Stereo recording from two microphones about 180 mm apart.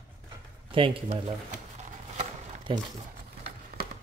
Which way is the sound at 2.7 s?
30° right (ahead or behind).